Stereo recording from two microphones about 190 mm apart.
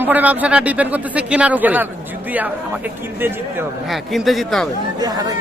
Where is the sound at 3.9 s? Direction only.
Centre (ahead or behind).